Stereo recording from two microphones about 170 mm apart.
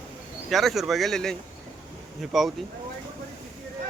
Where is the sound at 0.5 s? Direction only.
Centre (ahead or behind).